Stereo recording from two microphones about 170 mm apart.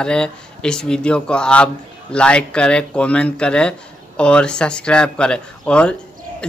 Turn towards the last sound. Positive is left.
turn(degrees=5)  # may be behind; listen again after turning